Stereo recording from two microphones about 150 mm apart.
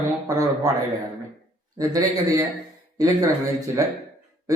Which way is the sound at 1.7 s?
25° right (ahead or behind).